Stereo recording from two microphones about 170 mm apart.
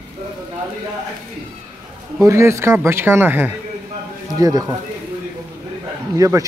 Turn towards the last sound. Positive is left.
turn(degrees=-20)  # may be behind; listen again after turning